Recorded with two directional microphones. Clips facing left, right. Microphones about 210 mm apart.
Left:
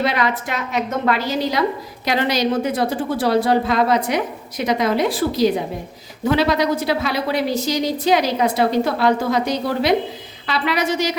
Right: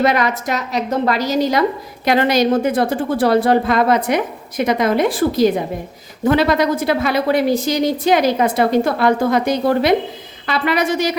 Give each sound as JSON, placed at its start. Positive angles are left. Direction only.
{"t": 0.0, "sound": "a woman's voice", "side_deg": -45}